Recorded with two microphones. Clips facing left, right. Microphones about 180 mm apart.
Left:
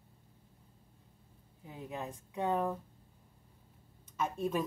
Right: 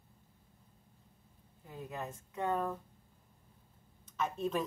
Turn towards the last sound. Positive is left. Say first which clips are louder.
# left 1 dB
turn(degrees=10)  # may be behind; listen again after turning